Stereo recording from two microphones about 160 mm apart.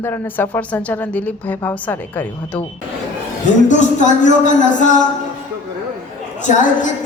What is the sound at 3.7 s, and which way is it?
Speech, 50° left (ahead or behind).